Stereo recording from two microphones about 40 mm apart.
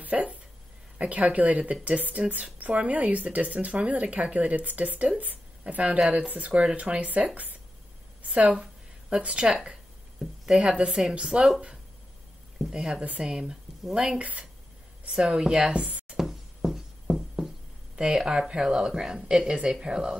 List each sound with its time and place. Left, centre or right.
0.0 s a woman's voice: right
10.4 s a woman's voice: centre
12.6 s a woman's voice: centre
14.1 s speech: right
15.0 s a woman's voice: centre
15.8 s speech: right
16.2 s music: centre
17.9 s a woman's voice: centre